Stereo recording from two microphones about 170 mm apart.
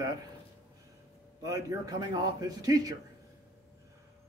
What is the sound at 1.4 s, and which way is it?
A man's voice, 20° right (ahead or behind).